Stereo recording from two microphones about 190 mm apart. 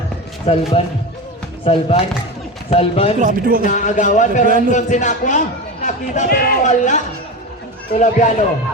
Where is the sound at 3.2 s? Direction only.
50° right (ahead or behind).